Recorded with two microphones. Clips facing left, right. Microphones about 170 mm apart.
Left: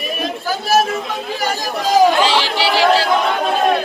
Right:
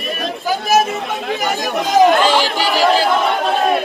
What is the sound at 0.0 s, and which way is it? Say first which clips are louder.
Chatter: even; centre (ahead or behind).